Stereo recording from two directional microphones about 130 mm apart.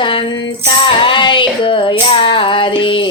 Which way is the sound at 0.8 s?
40° left (ahead or behind).